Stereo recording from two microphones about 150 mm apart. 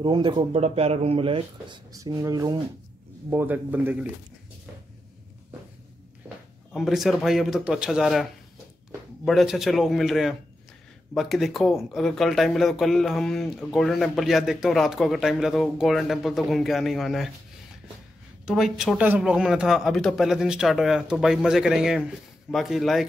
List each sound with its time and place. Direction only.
0.0 s speech: 35° right (ahead or behind)
1.9 s speech: 25° right (ahead or behind)
3.3 s speech: 15° right (ahead or behind)
6.7 s speech: centre (ahead or behind)
18.4 s speech: 5° right (ahead or behind)